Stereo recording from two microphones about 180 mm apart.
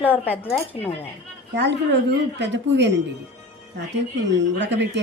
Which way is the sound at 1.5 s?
70° right (ahead or behind).